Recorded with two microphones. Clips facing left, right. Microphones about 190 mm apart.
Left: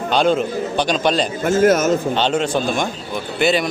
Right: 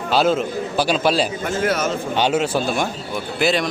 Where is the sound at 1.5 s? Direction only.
45° left (ahead or behind).